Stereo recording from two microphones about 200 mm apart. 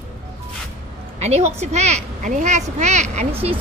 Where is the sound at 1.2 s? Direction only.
35° right (ahead or behind).